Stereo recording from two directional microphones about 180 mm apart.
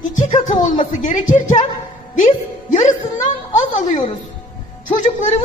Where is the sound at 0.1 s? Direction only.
45° left (ahead or behind).